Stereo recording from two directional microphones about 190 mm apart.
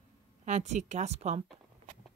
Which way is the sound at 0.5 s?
40° right (ahead or behind).